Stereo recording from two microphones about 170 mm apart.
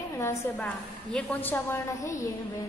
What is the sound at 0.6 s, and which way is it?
A woman's voice, 5° left (ahead or behind).